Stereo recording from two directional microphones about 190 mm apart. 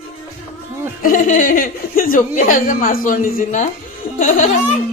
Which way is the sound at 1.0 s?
45° left (ahead or behind).